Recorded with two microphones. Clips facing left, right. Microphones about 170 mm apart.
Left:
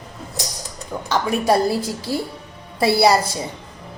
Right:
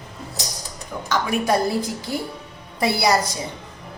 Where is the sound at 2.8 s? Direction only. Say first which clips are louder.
Left 5 dB; 25° left (ahead or behind).